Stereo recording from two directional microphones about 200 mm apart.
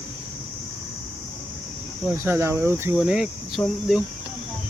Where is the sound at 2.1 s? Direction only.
10° right (ahead or behind).